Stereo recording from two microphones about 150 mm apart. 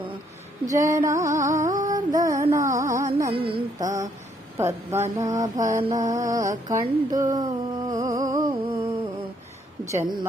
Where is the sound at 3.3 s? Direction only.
35° right (ahead or behind).